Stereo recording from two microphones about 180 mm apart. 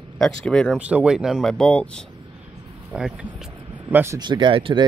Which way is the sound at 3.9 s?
15° right (ahead or behind).